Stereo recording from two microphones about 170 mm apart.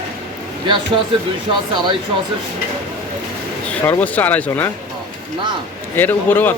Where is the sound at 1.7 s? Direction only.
25° right (ahead or behind).